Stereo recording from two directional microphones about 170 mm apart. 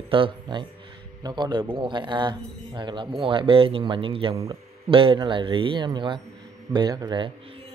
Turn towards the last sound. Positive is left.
turn(degrees=-30)  # may be behind; listen again after turning